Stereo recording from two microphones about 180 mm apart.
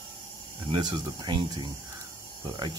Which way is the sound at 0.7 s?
25° right (ahead or behind).